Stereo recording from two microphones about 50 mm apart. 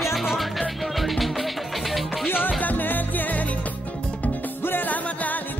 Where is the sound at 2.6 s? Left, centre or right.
Left.